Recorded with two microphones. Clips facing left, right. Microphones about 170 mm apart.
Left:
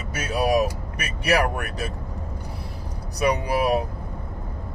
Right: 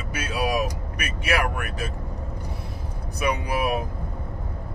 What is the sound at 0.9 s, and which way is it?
Speech, 35° left (ahead or behind).